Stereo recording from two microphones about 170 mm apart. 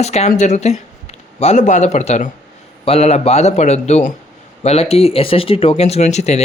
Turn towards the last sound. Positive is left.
turn(degrees=40)  # may be behind; listen again after turning